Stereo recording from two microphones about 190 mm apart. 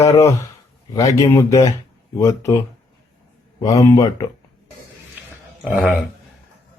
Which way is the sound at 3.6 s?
20° left (ahead or behind).